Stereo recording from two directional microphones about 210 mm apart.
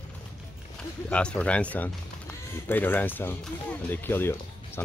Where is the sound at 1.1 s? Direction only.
5° left (ahead or behind).